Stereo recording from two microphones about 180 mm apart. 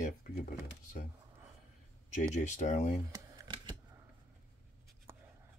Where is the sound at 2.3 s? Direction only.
40° left (ahead or behind).